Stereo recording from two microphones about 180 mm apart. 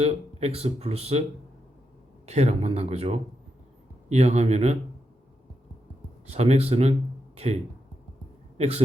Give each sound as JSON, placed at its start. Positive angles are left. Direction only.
{"t": 0.0, "sound": "speech", "side_deg": -35}
{"t": 2.2, "sound": "speech", "side_deg": -40}
{"t": 6.2, "sound": "a man's voice", "side_deg": -35}